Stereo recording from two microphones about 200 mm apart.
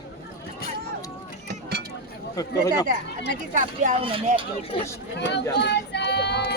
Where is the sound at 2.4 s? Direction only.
20° left (ahead or behind).